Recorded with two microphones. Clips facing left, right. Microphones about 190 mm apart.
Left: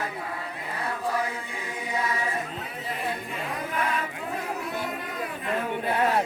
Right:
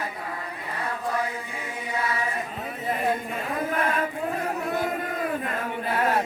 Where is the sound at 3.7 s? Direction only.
50° right (ahead or behind).